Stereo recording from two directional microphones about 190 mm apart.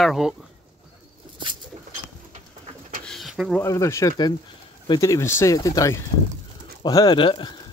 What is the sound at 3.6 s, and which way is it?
Speech, 15° left (ahead or behind).